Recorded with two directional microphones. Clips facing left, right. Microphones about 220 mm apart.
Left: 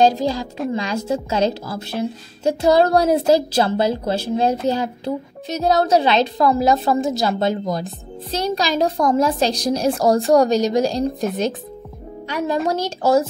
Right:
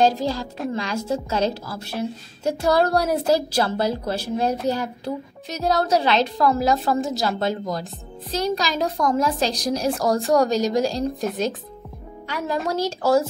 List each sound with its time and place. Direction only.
0.0 s speech: 15° left (ahead or behind)
12.3 s speech: 20° left (ahead or behind)